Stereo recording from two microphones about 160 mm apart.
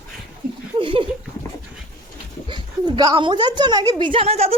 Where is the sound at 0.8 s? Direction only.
30° right (ahead or behind).